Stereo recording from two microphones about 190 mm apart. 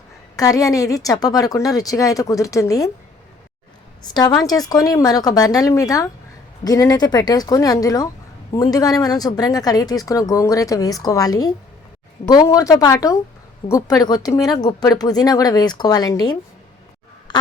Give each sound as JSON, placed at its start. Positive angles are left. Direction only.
{"t": 0.3, "sound": "speech", "side_deg": 20}
{"t": 4.1, "sound": "a woman's voice", "side_deg": 20}